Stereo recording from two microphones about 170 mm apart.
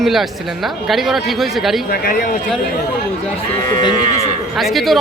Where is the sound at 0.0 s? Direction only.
Centre (ahead or behind).